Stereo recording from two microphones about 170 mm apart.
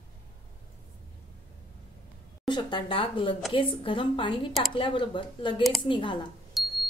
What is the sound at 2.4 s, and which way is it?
A woman's voice, 25° left (ahead or behind).